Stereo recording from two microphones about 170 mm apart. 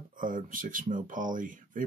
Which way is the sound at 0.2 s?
50° right (ahead or behind).